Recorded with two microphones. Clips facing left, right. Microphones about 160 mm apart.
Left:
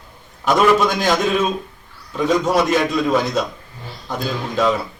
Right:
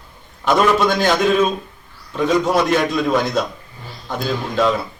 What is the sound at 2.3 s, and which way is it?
A man's voice, 5° left (ahead or behind).